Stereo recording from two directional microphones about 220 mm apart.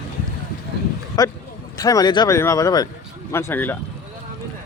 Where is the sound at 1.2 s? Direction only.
15° left (ahead or behind).